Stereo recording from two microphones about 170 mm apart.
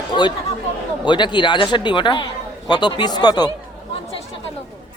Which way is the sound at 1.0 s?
25° left (ahead or behind).